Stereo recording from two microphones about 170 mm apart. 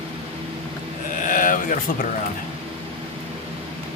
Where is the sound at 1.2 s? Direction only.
50° left (ahead or behind).